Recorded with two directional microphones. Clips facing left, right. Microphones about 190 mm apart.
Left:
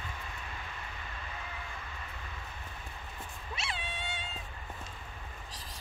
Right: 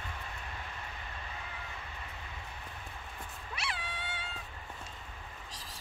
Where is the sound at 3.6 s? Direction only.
25° left (ahead or behind).